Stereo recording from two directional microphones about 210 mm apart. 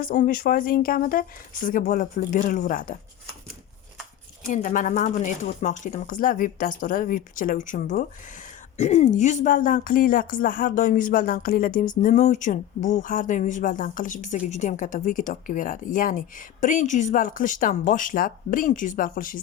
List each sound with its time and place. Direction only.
0.0 s speech: 40° left (ahead or behind)
4.4 s speech: 35° left (ahead or behind)